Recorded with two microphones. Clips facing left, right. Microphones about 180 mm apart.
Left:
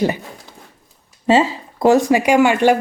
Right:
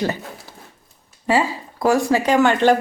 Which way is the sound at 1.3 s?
25° left (ahead or behind).